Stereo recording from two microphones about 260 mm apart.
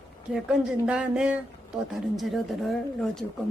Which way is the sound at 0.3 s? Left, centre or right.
Centre.